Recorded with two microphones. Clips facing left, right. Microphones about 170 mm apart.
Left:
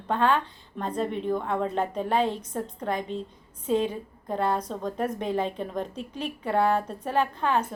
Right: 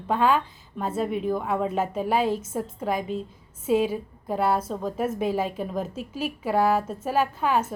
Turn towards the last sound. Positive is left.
turn(degrees=-5)  # may be behind; listen again after turning